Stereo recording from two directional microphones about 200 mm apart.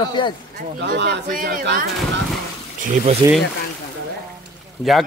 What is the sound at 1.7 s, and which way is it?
Speech, 55° right (ahead or behind).